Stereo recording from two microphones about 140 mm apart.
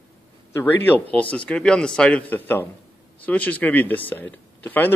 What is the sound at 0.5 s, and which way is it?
A man's voice, 15° left (ahead or behind).